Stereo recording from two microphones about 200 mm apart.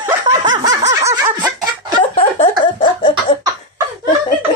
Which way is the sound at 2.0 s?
25° left (ahead or behind).